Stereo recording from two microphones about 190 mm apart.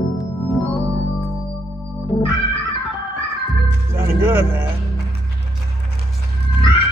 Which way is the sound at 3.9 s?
10° right (ahead or behind).